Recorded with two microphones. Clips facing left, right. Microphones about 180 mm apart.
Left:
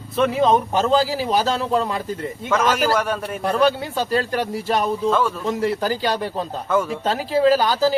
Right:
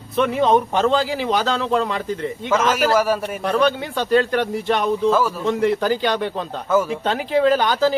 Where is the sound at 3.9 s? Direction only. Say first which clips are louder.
Right 3 dB; 40° left (ahead or behind).